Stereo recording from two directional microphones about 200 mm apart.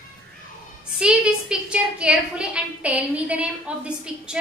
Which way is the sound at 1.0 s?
5° right (ahead or behind).